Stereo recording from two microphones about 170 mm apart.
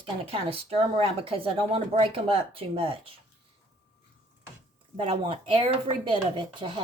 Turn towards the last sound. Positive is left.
turn(degrees=-30)  # may be behind; listen again after turning